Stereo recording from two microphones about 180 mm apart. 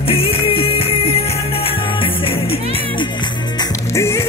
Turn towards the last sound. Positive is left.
turn(degrees=15)  # may be behind; listen again after turning